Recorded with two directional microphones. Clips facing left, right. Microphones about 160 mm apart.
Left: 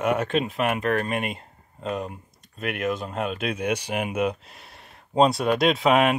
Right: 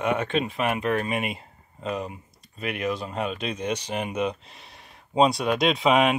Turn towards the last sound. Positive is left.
turn(degrees=0)  # may be behind; listen again after turning